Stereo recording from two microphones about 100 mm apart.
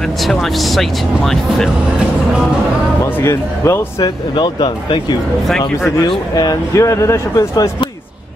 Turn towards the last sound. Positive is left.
turn(degrees=30)  # may be behind; listen again after turning